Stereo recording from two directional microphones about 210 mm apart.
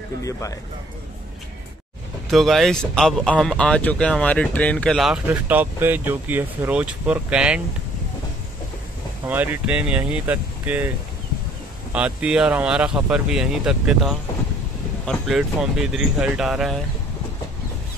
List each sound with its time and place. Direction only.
0.2 s speech: 15° left (ahead or behind)
2.3 s speech: centre (ahead or behind)
9.3 s speech: 10° right (ahead or behind)
11.9 s speech: 5° right (ahead or behind)